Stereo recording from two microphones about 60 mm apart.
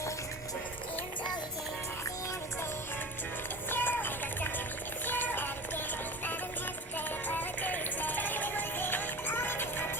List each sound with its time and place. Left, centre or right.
3.7 s music: left
6.9 s music: left